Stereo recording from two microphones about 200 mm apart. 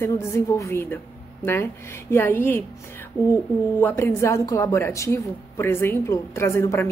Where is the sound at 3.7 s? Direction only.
10° left (ahead or behind).